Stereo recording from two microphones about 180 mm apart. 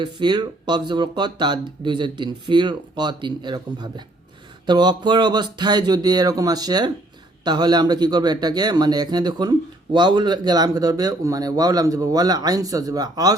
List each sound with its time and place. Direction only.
0.0 s speech: 25° right (ahead or behind)